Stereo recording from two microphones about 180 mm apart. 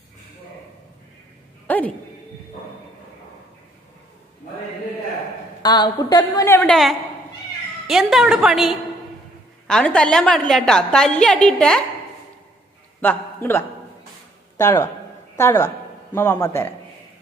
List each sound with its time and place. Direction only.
1.7 s a sound: 10° left (ahead or behind)
5.6 s a woman's voice: 25° left (ahead or behind)
6.6 s a woman's voice: centre (ahead or behind)
13.0 s a man's voice: 10° left (ahead or behind)